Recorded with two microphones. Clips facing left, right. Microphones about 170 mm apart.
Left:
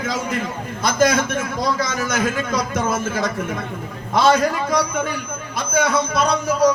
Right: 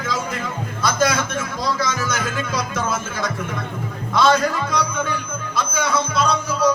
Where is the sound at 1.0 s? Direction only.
50° left (ahead or behind).